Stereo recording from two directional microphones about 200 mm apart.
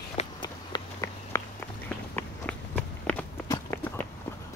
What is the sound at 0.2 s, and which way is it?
Run, 20° left (ahead or behind).